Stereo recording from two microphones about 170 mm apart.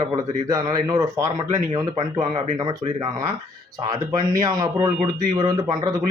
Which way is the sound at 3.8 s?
20° right (ahead or behind).